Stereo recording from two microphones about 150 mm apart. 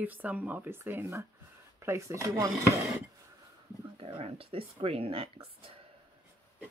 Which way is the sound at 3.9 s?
40° right (ahead or behind).